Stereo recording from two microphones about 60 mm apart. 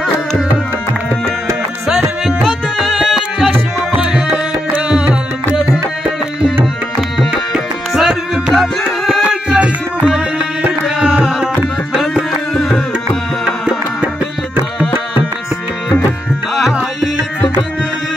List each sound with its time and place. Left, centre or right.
1.9 s music: centre
3.9 s tabla: centre
4.7 s music: centre
6.6 s tabla: centre
8.8 s music: centre
11.0 s tabla: centre
12.0 s music: centre
12.5 s music: centre
16.5 s music: centre